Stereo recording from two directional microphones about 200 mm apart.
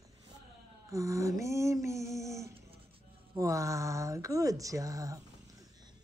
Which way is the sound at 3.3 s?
15° right (ahead or behind).